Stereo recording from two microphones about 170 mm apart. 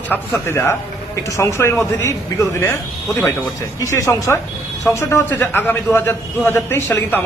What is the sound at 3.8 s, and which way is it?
A man's voice, 15° left (ahead or behind).